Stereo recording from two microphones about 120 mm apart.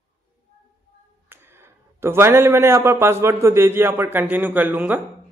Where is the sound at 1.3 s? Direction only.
20° right (ahead or behind).